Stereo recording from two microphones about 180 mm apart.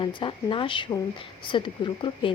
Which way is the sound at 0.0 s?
25° left (ahead or behind).